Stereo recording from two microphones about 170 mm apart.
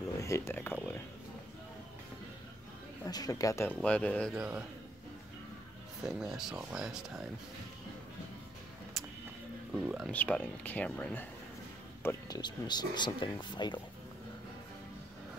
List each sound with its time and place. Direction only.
0.2 s speech: 15° left (ahead or behind)
3.1 s speech: 20° left (ahead or behind); by 4.4 s 5° left (ahead or behind)
4.4 s a man's voice: 10° right (ahead or behind)
6.0 s speech: 5° right (ahead or behind)
9.0 s music: centre (ahead or behind)
9.8 s speech: centre (ahead or behind)
10.1 s speech: 10° left (ahead or behind); by 13.7 s 25° left (ahead or behind)